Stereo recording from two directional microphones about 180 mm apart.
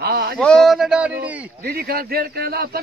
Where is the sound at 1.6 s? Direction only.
60° right (ahead or behind).